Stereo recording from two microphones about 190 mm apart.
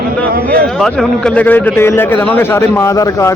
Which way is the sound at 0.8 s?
Centre (ahead or behind).